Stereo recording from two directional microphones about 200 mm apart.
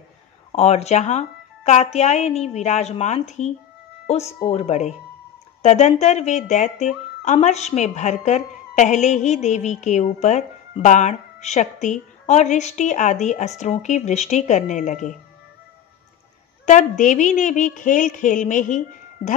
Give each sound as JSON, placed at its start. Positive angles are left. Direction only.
{"t": 0.5, "sound": "speech", "side_deg": 35}
{"t": 16.6, "sound": "speech", "side_deg": 40}